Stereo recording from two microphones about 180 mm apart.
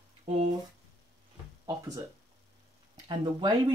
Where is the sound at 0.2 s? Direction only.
35° right (ahead or behind).